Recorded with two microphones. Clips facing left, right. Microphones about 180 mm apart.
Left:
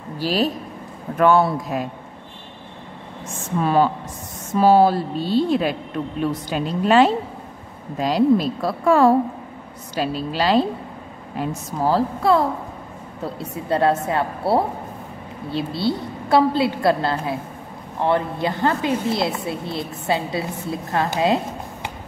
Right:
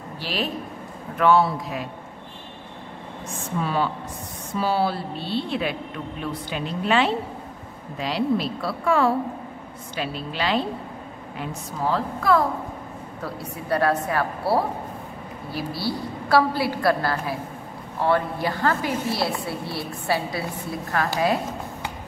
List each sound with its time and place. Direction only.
0.2 s a woman's voice: 40° left (ahead or behind)
3.6 s a woman's voice: 45° left (ahead or behind)
11.8 s a woman's voice: 30° left (ahead or behind)